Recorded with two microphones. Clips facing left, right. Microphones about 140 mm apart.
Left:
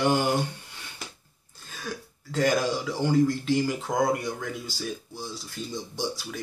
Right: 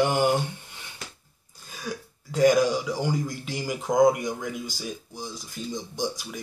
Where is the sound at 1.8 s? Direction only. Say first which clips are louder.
Right 2 dB; 15° right (ahead or behind).